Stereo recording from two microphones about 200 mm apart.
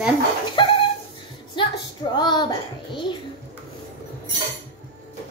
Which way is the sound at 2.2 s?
20° left (ahead or behind).